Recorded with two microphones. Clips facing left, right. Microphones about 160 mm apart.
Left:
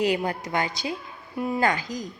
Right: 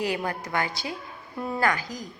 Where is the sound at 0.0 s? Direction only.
20° left (ahead or behind).